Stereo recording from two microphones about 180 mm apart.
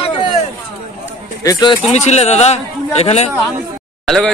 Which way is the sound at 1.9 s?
40° left (ahead or behind).